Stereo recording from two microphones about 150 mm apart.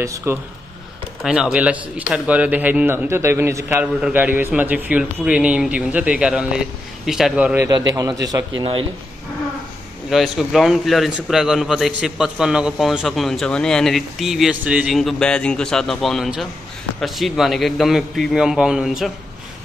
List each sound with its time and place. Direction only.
0.0 s a man's voice: 20° right (ahead or behind)
1.2 s a man's voice: 5° right (ahead or behind)
7.7 s a man's voice: 25° right (ahead or behind)
10.0 s a man's voice: centre (ahead or behind)